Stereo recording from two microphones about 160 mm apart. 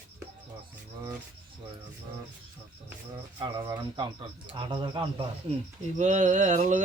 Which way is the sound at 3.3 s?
30° right (ahead or behind).